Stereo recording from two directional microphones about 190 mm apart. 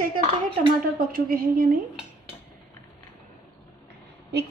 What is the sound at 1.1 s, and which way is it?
Speech, 50° right (ahead or behind).